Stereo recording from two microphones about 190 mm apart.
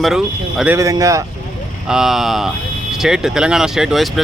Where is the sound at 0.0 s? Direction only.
Centre (ahead or behind).